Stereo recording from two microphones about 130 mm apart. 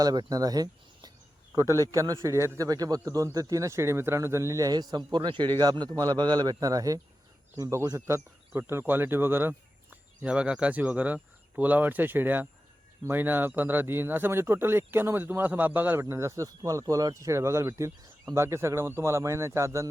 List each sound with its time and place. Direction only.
0.0 s a man's voice: 30° right (ahead or behind)